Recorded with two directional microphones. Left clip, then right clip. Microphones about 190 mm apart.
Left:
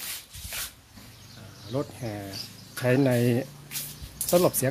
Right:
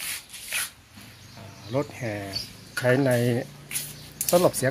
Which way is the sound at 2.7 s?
25° left (ahead or behind).